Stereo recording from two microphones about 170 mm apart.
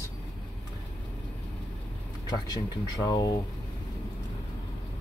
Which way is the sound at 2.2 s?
25° left (ahead or behind).